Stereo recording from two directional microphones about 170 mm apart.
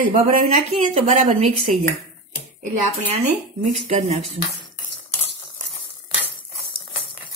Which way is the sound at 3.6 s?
45° right (ahead or behind).